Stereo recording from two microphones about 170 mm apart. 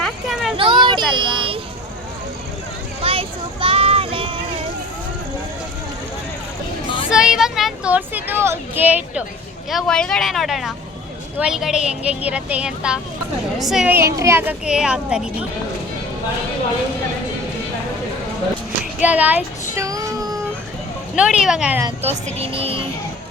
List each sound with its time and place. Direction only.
0.0 s a sound: centre (ahead or behind)
0.5 s a sound: 30° right (ahead or behind)
3.0 s a sound: 35° right (ahead or behind)
7.1 s speech: 5° right (ahead or behind)
9.6 s speech: centre (ahead or behind)
19.0 s speech: 10° right (ahead or behind)
19.7 s child singing: 20° right (ahead or behind)
21.2 s speech: 5° right (ahead or behind)
22.0 s speech: 35° right (ahead or behind)